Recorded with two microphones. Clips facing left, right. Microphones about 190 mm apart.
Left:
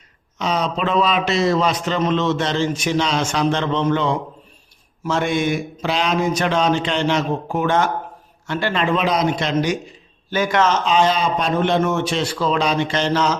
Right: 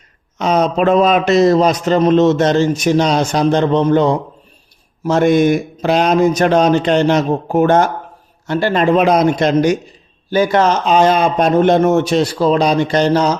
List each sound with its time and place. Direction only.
0.3 s a man's voice: 50° right (ahead or behind)
10.3 s a man's voice: 35° right (ahead or behind)